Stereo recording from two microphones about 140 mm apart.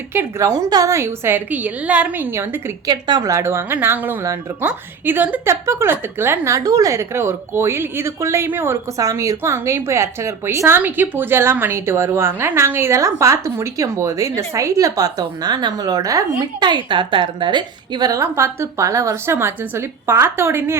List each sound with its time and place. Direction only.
0.1 s a woman's voice: 20° right (ahead or behind)
2.8 s speech: 30° right (ahead or behind)